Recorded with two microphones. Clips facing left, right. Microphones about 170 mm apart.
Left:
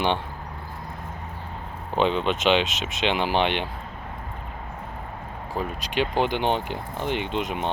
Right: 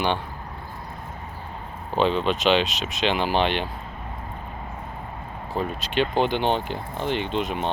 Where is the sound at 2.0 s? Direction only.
20° left (ahead or behind).